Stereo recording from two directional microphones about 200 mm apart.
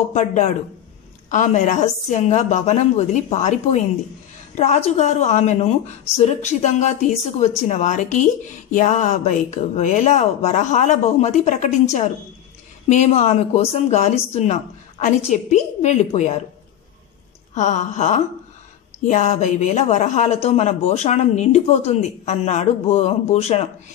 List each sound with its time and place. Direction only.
0.1 s speech: 35° left (ahead or behind)
17.6 s speech: 35° left (ahead or behind)